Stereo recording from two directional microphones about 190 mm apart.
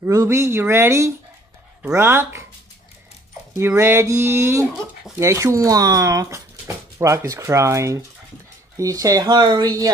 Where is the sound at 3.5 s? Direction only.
15° right (ahead or behind).